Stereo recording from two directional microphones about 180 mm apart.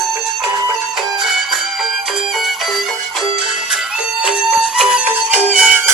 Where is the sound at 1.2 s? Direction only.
Centre (ahead or behind).